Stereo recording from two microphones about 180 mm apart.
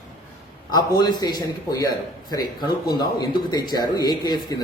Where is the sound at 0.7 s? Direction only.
20° left (ahead or behind).